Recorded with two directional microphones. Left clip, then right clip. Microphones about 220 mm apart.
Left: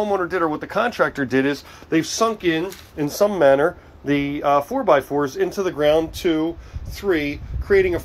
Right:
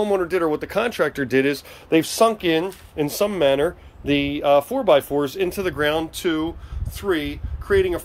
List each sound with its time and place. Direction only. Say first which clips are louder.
0.0 s speech: even; 25° right (ahead or behind); by 8.0 s centre (ahead or behind)